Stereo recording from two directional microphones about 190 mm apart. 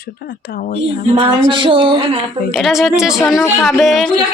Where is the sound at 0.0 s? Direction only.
50° left (ahead or behind).